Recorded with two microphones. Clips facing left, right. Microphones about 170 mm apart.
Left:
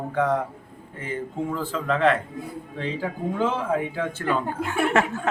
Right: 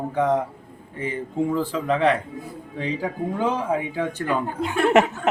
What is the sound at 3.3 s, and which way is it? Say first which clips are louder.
Speech: even; 15° right (ahead or behind).